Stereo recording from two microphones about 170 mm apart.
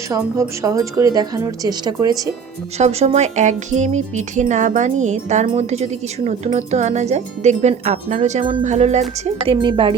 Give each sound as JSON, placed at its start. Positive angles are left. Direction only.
{"t": 0.1, "sound": "a woman's voice", "side_deg": -20}
{"t": 2.7, "sound": "speech", "side_deg": -40}